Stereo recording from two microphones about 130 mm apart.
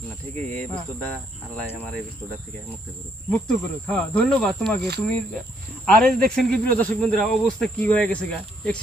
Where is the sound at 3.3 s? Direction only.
5° left (ahead or behind).